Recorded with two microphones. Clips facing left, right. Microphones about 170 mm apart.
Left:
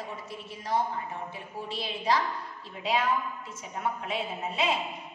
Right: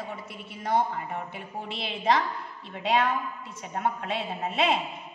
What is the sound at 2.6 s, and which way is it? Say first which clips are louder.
A woman's voice: right 3 dB; 65° right (ahead or behind).